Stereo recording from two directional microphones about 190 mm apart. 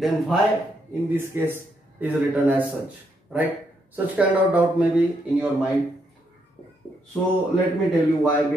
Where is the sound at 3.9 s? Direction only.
5° right (ahead or behind).